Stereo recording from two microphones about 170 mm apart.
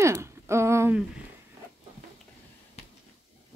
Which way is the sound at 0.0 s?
15° right (ahead or behind).